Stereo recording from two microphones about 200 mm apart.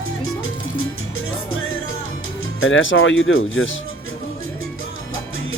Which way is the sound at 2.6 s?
70° left (ahead or behind).